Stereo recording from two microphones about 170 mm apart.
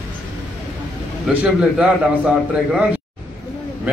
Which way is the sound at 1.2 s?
Centre (ahead or behind).